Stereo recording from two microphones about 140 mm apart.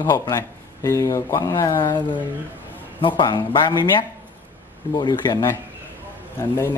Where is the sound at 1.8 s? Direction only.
35° left (ahead or behind).